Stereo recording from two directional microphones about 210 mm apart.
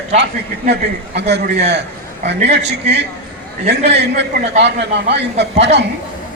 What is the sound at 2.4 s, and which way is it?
Speech, 55° right (ahead or behind).